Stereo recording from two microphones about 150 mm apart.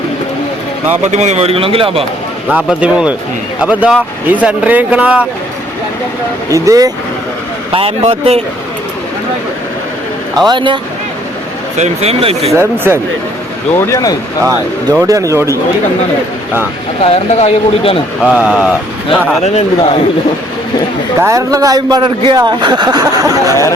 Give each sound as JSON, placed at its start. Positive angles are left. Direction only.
{"t": 1.1, "sound": "a man's voice", "side_deg": -50}
{"t": 2.5, "sound": "speech", "side_deg": -10}
{"t": 6.5, "sound": "speech", "side_deg": -25}
{"t": 7.7, "sound": "a man's voice", "side_deg": -40}
{"t": 10.3, "sound": "a man's voice", "side_deg": -30}
{"t": 11.8, "sound": "speech", "side_deg": -40}
{"t": 12.5, "sound": "speech", "side_deg": -15}
{"t": 13.7, "sound": "speech", "side_deg": 20}
{"t": 15.0, "sound": "speech", "side_deg": -20}
{"t": 17.0, "sound": "speech", "side_deg": 40}
{"t": 18.3, "sound": "speech", "side_deg": -10}
{"t": 19.4, "sound": "a man's voice", "side_deg": 45}
{"t": 21.2, "sound": "speech", "side_deg": -20}